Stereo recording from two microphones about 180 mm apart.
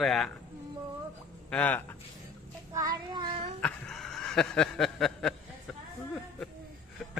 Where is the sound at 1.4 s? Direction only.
10° left (ahead or behind).